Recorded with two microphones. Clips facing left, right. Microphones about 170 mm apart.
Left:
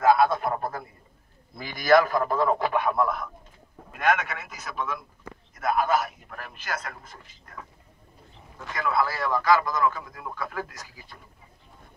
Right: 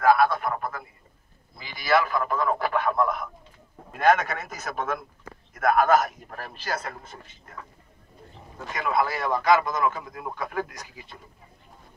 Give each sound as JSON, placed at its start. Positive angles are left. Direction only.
{"t": 0.0, "sound": "a sound", "side_deg": 25}
{"t": 1.6, "sound": "a man's voice", "side_deg": 45}
{"t": 2.6, "sound": "speech", "side_deg": 15}
{"t": 3.9, "sound": "a man's voice", "side_deg": -35}
{"t": 8.6, "sound": "speech", "side_deg": -20}